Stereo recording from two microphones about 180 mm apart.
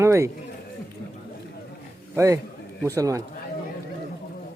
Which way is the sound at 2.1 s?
15° right (ahead or behind).